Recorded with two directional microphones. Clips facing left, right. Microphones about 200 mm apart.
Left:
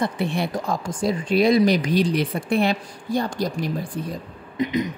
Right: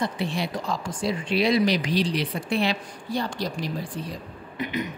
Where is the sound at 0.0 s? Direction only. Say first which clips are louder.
Left 4 dB; 55° left (ahead or behind).